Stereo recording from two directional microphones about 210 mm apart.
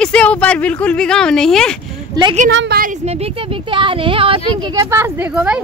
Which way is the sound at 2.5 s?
60° right (ahead or behind).